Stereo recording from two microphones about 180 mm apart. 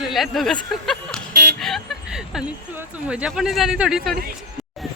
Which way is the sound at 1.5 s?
Centre (ahead or behind).